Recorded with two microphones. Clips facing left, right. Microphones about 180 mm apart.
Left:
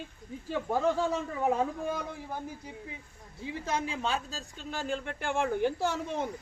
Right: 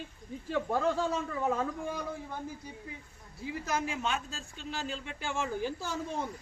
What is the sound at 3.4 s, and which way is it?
Speech, 25° left (ahead or behind).